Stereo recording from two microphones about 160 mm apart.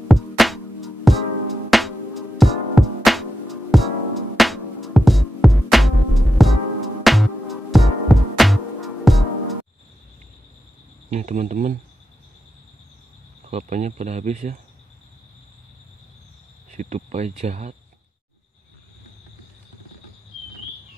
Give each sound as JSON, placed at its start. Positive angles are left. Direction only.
{"t": 0.1, "sound": "music", "side_deg": 0}
{"t": 11.1, "sound": "speech", "side_deg": -50}
{"t": 13.4, "sound": "speech", "side_deg": -50}
{"t": 16.7, "sound": "speech", "side_deg": -45}